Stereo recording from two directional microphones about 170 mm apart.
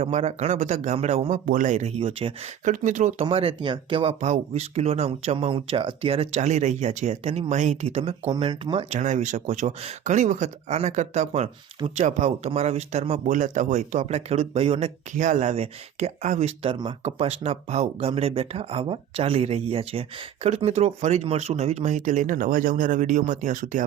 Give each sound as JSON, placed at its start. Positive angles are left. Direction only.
{"t": 0.0, "sound": "speech", "side_deg": -40}
{"t": 1.5, "sound": "speech", "side_deg": -50}
{"t": 2.6, "sound": "speech", "side_deg": -45}
{"t": 4.2, "sound": "speech", "side_deg": -40}